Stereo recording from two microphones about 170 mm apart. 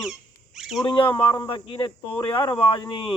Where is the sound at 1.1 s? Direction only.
25° left (ahead or behind).